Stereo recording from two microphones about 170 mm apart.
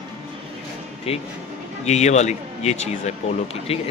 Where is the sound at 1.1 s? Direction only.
35° left (ahead or behind).